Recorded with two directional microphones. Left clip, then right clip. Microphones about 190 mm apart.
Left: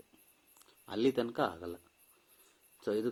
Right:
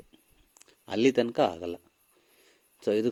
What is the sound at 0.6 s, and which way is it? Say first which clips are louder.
Speech: right 7 dB; 35° right (ahead or behind).